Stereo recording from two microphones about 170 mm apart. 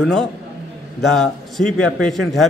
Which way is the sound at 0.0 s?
Centre (ahead or behind).